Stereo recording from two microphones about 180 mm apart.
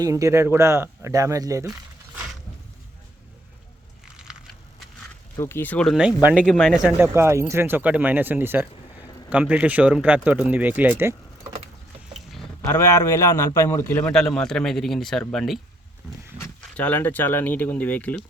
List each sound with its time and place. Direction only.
0.0 s speech: 20° right (ahead or behind)
5.4 s speech: 15° left (ahead or behind); by 11.1 s 10° right (ahead or behind)
12.6 s a man's voice: 15° left (ahead or behind)